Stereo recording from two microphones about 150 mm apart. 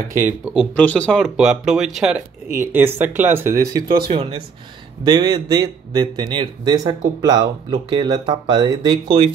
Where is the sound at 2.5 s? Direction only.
15° right (ahead or behind).